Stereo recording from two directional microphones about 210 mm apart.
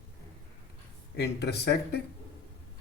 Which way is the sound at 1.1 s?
55° left (ahead or behind).